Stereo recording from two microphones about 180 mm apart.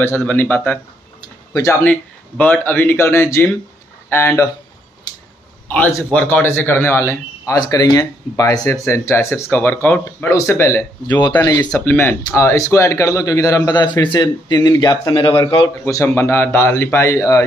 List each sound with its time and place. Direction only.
0.0 s a man's voice: 15° left (ahead or behind)
5.1 s a sound: 20° left (ahead or behind)
5.7 s a man's voice: 10° left (ahead or behind)